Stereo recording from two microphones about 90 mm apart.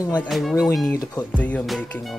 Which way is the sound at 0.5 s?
40° left (ahead or behind).